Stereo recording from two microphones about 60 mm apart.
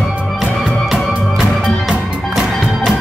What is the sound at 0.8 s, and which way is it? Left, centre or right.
Music, centre.